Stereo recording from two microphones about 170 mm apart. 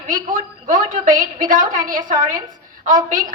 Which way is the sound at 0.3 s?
55° right (ahead or behind).